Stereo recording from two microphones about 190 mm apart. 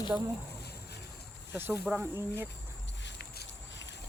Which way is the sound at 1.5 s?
10° right (ahead or behind).